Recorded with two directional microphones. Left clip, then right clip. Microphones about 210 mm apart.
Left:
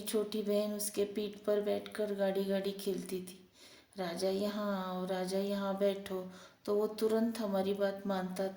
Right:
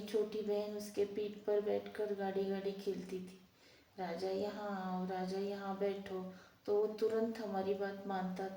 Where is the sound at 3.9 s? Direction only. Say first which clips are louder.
Left 4 dB; 50° left (ahead or behind).